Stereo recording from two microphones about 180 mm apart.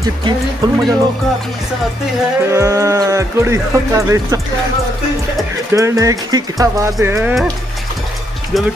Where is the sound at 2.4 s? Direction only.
15° right (ahead or behind).